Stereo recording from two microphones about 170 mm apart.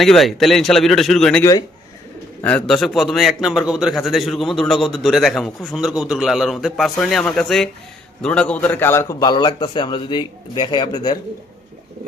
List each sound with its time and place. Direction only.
0.0 s a man's voice: centre (ahead or behind); by 11.2 s 25° left (ahead or behind)